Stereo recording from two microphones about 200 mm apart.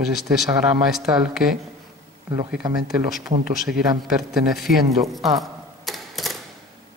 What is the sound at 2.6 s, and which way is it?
Speech, 20° right (ahead or behind).